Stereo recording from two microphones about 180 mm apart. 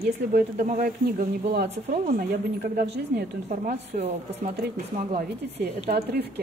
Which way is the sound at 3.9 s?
40° right (ahead or behind).